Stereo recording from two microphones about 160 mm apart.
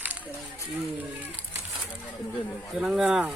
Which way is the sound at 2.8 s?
5° right (ahead or behind).